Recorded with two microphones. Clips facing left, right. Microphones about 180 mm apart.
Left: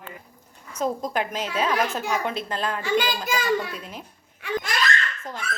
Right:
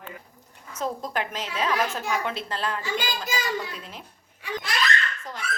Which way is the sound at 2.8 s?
55° left (ahead or behind).